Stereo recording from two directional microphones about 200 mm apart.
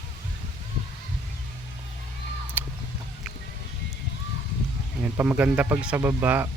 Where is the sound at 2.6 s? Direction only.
10° right (ahead or behind).